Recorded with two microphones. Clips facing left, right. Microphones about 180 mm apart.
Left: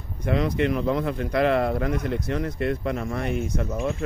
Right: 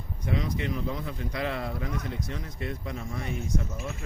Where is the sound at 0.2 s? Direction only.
65° left (ahead or behind).